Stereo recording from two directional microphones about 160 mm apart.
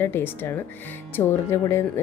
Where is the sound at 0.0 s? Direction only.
15° left (ahead or behind).